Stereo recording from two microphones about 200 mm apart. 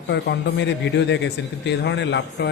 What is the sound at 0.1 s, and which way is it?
Speech, 60° left (ahead or behind).